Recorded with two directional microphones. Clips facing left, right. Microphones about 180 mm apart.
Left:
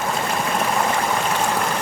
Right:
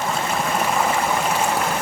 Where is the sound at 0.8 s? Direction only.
5° right (ahead or behind).